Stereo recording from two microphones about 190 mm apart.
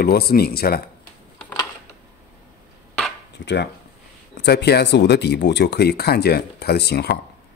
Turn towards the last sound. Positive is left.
turn(degrees=60)  # may be behind; listen again after turning